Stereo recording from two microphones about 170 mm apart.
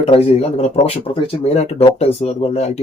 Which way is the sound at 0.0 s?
35° left (ahead or behind).